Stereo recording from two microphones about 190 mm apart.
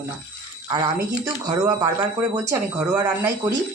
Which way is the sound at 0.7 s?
20° right (ahead or behind).